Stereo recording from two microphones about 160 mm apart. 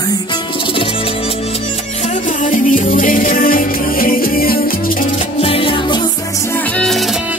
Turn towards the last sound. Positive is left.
turn(degrees=0)  # may be behind; listen again after turning